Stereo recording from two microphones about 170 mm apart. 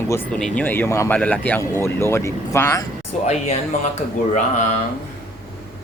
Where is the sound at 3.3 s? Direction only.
40° left (ahead or behind).